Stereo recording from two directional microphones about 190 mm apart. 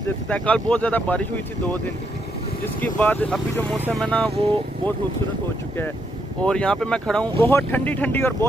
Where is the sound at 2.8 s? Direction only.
10° left (ahead or behind).